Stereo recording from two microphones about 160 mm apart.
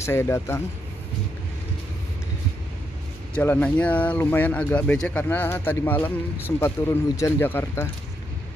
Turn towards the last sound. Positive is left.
turn(degrees=15)  # may be behind; listen again after turning